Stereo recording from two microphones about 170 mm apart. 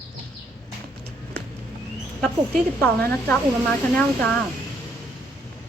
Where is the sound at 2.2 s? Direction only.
10° left (ahead or behind).